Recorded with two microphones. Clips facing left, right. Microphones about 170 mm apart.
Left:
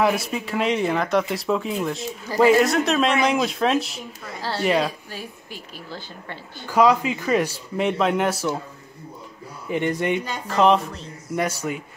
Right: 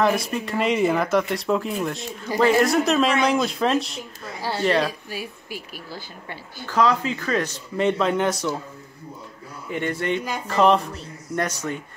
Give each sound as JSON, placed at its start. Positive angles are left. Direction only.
{"t": 0.0, "sound": "speech", "side_deg": 0}
{"t": 5.1, "sound": "a woman's voice", "side_deg": -10}
{"t": 6.6, "sound": "speech", "side_deg": 15}
{"t": 9.7, "sound": "speech", "side_deg": 15}
{"t": 10.2, "sound": "speech", "side_deg": 0}